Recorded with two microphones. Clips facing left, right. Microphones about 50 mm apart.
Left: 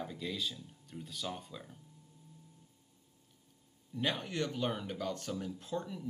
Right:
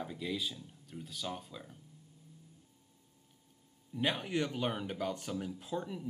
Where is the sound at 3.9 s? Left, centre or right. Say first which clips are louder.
Right 2 dB; centre.